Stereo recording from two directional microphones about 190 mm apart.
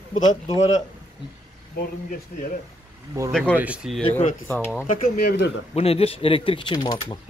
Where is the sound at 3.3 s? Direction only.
5° left (ahead or behind).